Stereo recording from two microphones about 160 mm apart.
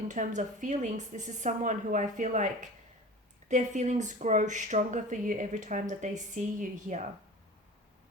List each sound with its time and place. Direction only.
0.1 s speech: 50° right (ahead or behind)